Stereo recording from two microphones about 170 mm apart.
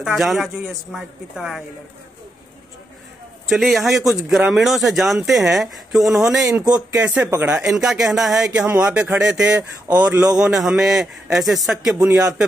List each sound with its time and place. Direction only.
0.0 s speech: centre (ahead or behind)
3.4 s speech: centre (ahead or behind)
6.6 s speech: 25° right (ahead or behind)
7.0 s speech: 10° right (ahead or behind)